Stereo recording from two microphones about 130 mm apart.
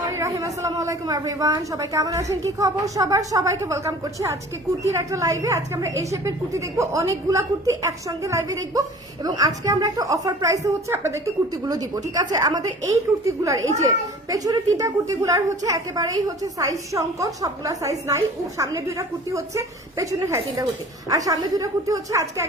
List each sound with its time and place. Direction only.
0.2 s a woman's voice: 25° right (ahead or behind)